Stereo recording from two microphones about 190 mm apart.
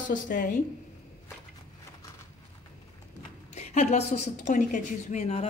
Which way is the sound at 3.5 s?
35° left (ahead or behind).